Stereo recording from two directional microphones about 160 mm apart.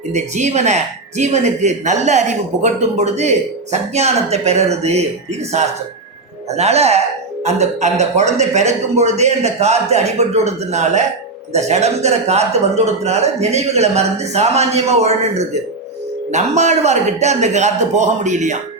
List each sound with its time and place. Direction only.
0.1 s a man's voice: 45° right (ahead or behind)